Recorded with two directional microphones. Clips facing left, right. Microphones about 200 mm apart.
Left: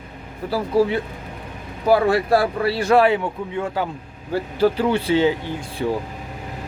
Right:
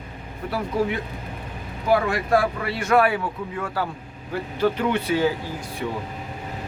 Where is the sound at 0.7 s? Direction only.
35° left (ahead or behind).